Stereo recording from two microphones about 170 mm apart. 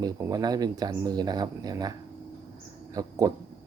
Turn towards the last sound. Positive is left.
turn(degrees=-20)  # may be behind; listen again after turning